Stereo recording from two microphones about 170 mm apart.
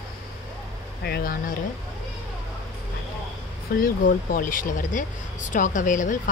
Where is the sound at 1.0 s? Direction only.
65° left (ahead or behind).